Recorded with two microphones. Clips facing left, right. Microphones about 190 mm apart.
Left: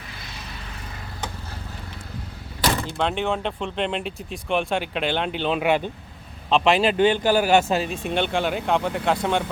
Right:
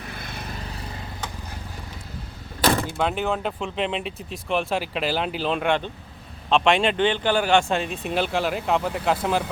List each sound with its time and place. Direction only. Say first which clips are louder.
0.1 s vehicle: right 4 dB; 55° right (ahead or behind)
3.0 s speech: even; 5° right (ahead or behind)